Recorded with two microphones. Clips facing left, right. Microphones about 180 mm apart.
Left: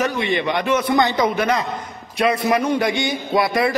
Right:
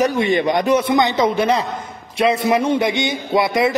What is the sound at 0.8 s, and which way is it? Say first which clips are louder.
A man's voice: right 1 dB; 20° right (ahead or behind).